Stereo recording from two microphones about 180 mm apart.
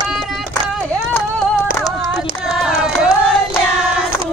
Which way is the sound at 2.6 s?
5° right (ahead or behind).